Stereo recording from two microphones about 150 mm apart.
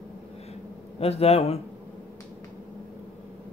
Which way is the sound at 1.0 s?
40° left (ahead or behind).